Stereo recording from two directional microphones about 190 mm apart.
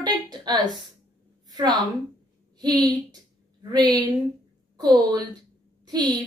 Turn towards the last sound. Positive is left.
turn(degrees=-20)  # may be behind; listen again after turning